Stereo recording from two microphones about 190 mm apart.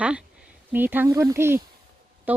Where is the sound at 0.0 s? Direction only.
5° right (ahead or behind).